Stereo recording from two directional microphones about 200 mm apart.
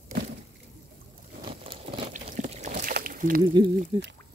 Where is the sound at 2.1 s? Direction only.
35° right (ahead or behind).